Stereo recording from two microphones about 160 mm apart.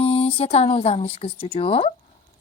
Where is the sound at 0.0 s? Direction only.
35° left (ahead or behind).